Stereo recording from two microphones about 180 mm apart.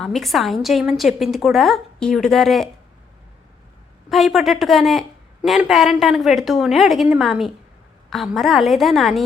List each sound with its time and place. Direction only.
0.0 s speech: centre (ahead or behind)
4.1 s speech: centre (ahead or behind)